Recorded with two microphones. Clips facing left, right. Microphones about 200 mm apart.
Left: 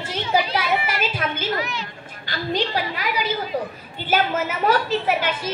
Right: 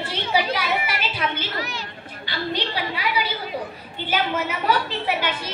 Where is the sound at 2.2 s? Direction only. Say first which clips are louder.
Left 3 dB; 45° left (ahead or behind).